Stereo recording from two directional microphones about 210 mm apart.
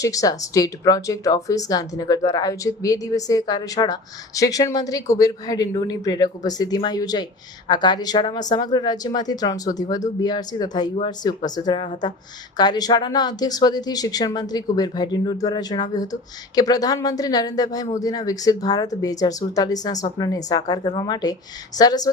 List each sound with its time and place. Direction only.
0.0 s speech: 15° left (ahead or behind)